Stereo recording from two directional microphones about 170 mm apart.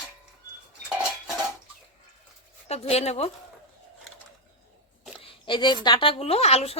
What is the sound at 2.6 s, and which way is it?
Speech, 35° left (ahead or behind).